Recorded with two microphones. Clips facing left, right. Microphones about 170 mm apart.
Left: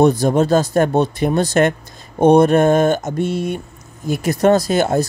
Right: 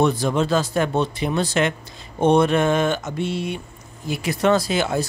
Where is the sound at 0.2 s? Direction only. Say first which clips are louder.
Left 6 dB; 45° left (ahead or behind).